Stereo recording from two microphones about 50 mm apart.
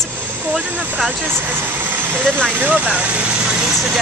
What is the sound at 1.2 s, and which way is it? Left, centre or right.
Speech, right.